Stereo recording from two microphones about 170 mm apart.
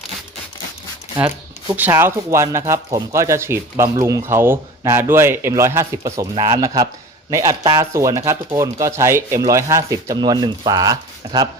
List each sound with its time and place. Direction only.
1.7 s speech: 10° right (ahead or behind)